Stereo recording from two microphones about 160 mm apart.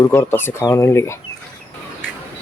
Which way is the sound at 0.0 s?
15° left (ahead or behind).